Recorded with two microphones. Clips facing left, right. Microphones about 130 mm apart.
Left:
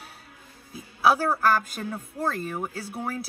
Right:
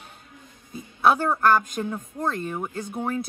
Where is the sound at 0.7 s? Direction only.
5° left (ahead or behind).